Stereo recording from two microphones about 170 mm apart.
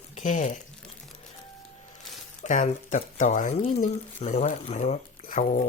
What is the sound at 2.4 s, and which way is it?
Speech, 45° left (ahead or behind).